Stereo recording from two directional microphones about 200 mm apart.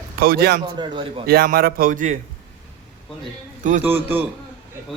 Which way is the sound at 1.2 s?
50° right (ahead or behind).